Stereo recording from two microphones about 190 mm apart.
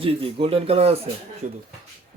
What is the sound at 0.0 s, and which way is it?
Speech, 30° right (ahead or behind).